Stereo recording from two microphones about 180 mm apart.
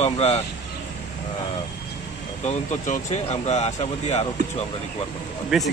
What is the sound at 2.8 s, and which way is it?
Speech, 40° left (ahead or behind).